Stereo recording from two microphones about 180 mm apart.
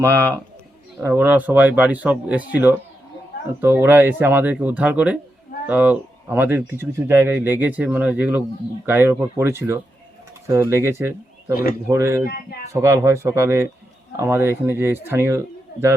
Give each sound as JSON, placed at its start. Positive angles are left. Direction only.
{"t": 0.0, "sound": "speech", "side_deg": -15}
{"t": 12.2, "sound": "speech", "side_deg": 60}
{"t": 12.7, "sound": "speech", "side_deg": -15}